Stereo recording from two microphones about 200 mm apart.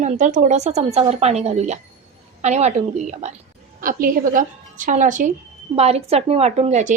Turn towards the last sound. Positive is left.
turn(degrees=-35)  # may be behind; listen again after turning